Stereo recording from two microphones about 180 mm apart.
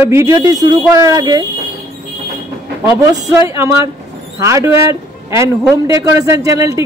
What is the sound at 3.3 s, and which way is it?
Speech, 15° right (ahead or behind).